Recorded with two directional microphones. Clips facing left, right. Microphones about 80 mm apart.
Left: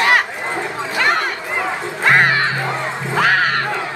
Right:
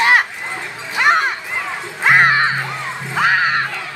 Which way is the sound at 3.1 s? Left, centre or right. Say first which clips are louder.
Even; centre.